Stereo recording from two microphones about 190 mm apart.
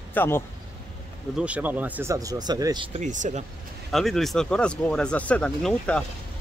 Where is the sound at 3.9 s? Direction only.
Centre (ahead or behind).